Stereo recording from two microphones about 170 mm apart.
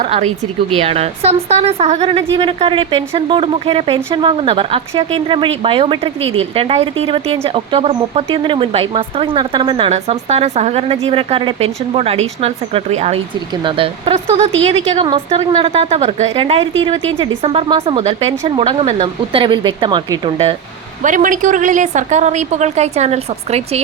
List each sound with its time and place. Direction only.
0.0 s speech: 40° right (ahead or behind)
21.0 s a woman's voice: 50° right (ahead or behind)